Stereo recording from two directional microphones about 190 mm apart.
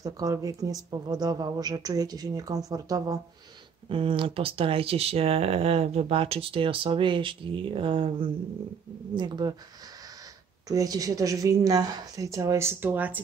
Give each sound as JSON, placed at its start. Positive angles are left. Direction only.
{"t": 0.0, "sound": "speech", "side_deg": -20}
{"t": 10.7, "sound": "speech", "side_deg": -20}